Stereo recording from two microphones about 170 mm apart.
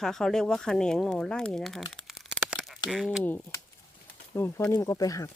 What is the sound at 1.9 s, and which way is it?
Crumpling, centre (ahead or behind).